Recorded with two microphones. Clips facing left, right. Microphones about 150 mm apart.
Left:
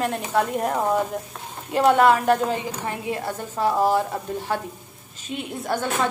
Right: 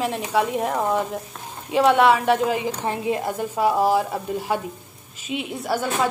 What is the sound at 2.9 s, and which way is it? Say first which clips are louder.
Speech: right 4 dB; 25° right (ahead or behind).